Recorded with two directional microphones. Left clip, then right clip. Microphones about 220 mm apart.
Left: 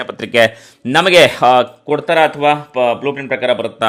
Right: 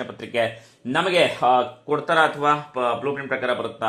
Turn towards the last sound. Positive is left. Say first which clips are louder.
# left 8 dB
turn(degrees=55)  # may be behind; listen again after turning